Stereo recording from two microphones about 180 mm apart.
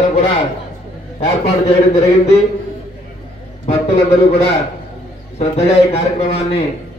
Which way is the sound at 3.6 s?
35° left (ahead or behind).